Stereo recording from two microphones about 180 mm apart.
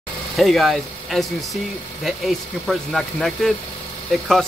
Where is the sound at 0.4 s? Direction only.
Centre (ahead or behind).